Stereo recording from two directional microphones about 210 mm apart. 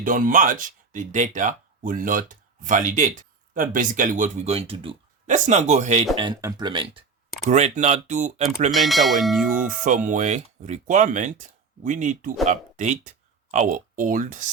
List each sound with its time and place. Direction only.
0.0 s speech: 40° right (ahead or behind)
6.1 s speech: 20° right (ahead or behind)
7.5 s speech: 35° right (ahead or behind)
8.7 s speech: centre (ahead or behind)
9.6 s speech: 40° right (ahead or behind)